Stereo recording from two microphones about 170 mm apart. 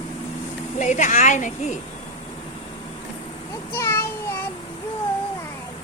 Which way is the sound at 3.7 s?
15° left (ahead or behind).